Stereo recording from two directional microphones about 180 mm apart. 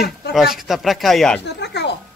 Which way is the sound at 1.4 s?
70° left (ahead or behind).